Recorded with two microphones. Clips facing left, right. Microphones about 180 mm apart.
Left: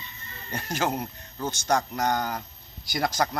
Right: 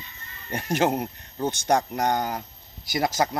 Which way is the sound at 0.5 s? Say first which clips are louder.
Right 5 dB; 20° right (ahead or behind).